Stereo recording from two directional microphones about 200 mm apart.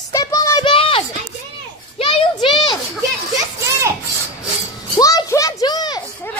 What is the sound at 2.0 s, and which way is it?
Child singing, 25° left (ahead or behind).